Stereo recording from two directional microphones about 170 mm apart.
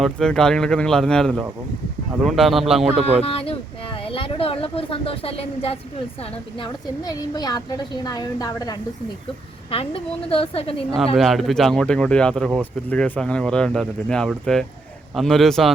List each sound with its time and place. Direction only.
0.0 s speech: 5° left (ahead or behind)
3.2 s speech: 35° left (ahead or behind)
6.6 s a woman's voice: 20° left (ahead or behind)
9.7 s speech: 35° left (ahead or behind)
10.9 s speech: centre (ahead or behind)